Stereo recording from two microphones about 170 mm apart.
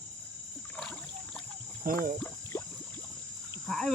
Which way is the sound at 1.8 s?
55° right (ahead or behind).